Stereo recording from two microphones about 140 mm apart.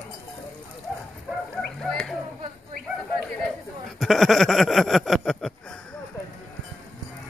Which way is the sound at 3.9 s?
Centre (ahead or behind).